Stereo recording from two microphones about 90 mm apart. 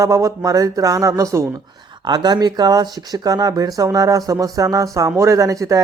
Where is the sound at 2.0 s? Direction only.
50° right (ahead or behind).